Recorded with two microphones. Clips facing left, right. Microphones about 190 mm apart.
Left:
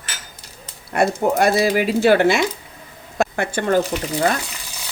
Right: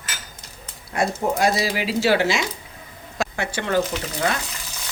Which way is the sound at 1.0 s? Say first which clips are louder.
Left 4 dB; 55° left (ahead or behind).